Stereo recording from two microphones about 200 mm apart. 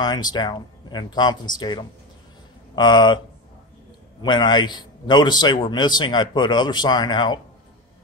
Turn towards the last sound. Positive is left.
turn(degrees=20)  # may be behind; listen again after turning